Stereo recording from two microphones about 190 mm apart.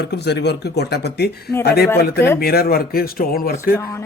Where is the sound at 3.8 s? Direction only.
15° left (ahead or behind).